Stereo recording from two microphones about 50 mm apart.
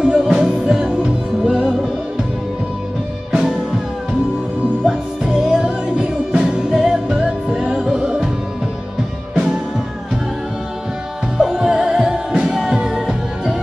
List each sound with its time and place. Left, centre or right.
0.0 s music: centre
3.3 s music: centre
5.2 s music: centre
11.3 s music: centre